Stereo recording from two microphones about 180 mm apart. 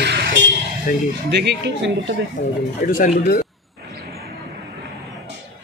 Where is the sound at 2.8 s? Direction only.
50° left (ahead or behind).